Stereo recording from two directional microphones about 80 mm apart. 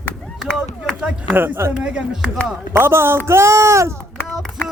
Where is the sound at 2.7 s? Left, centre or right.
Right.